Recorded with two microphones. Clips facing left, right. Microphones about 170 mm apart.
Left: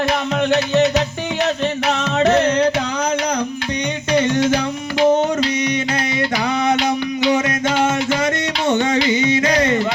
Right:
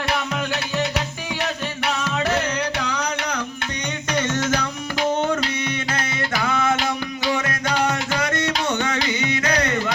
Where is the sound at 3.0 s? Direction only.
45° left (ahead or behind).